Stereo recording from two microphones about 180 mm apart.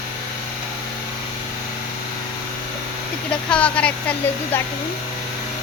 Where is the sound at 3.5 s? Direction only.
5° left (ahead or behind).